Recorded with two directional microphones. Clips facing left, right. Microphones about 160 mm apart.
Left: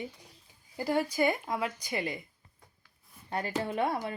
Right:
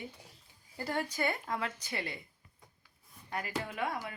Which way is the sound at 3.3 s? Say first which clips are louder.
Left 6 dB; 30° left (ahead or behind).